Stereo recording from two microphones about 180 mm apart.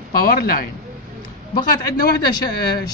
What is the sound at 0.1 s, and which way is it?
Speech, 55° left (ahead or behind).